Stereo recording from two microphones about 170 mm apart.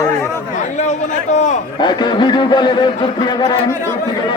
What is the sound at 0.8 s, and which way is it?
Speech, 45° left (ahead or behind).